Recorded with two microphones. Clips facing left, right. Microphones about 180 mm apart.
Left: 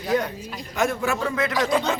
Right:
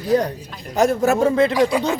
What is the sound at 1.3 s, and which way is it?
Speech, 30° right (ahead or behind).